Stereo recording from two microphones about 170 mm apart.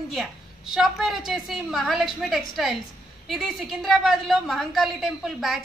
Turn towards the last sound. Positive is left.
turn(degrees=0)  # may be behind; listen again after turning